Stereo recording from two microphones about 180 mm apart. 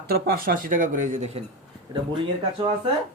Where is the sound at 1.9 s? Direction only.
25° right (ahead or behind).